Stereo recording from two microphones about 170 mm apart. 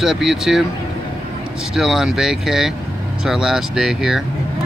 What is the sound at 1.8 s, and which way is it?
Speech, centre (ahead or behind).